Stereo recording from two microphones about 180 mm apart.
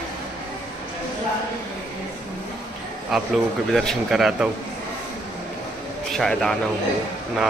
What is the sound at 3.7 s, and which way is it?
Speech, centre (ahead or behind).